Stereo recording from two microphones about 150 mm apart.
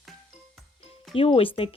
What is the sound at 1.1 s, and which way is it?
Speech, 40° left (ahead or behind).